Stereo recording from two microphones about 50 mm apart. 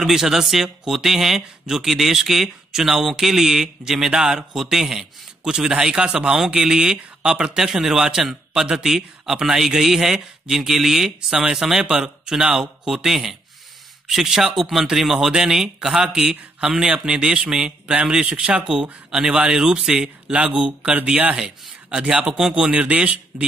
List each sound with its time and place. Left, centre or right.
0.0 s speech: centre; by 21.4 s right
21.4 s speech: centre